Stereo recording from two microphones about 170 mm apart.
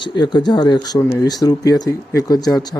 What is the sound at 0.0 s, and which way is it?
Speech, 25° left (ahead or behind).